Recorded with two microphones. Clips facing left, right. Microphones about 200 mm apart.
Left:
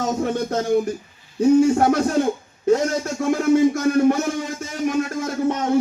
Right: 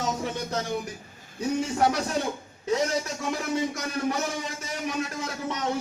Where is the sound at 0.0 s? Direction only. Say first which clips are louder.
Left 8 dB; 50° left (ahead or behind).